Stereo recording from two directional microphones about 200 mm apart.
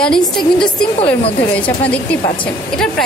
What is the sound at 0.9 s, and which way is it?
Speech, 30° left (ahead or behind).